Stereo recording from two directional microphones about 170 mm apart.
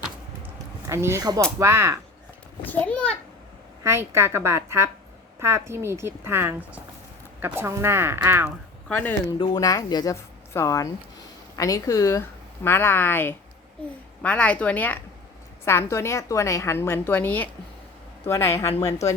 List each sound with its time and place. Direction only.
0.9 s a woman's voice: 15° right (ahead or behind)
2.6 s a sound: 5° left (ahead or behind)
3.8 s a woman's voice: 15° right (ahead or behind)
8.9 s a woman's voice: 10° left (ahead or behind)